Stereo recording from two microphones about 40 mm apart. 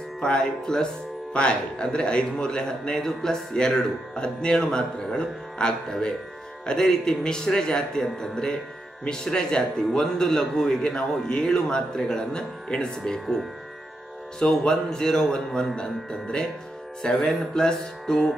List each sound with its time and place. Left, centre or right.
0.2 s a man's voice: centre
14.4 s a man's voice: centre
17.1 s a man's voice: centre